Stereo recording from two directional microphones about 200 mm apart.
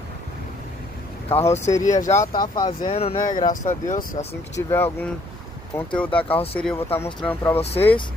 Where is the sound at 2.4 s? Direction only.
20° left (ahead or behind); by 4.3 s 40° left (ahead or behind).